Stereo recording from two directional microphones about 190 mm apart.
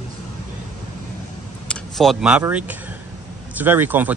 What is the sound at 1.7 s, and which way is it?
Speech, centre (ahead or behind).